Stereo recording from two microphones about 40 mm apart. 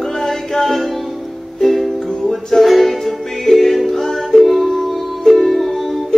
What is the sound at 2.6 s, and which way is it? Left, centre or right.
Music, centre.